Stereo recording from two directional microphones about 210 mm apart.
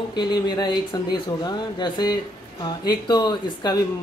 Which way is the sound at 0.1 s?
20° left (ahead or behind).